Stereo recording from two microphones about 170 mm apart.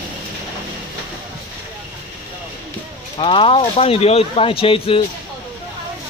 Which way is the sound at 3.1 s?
30° left (ahead or behind).